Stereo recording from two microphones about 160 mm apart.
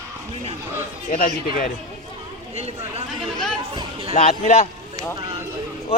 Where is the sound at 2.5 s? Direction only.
40° right (ahead or behind).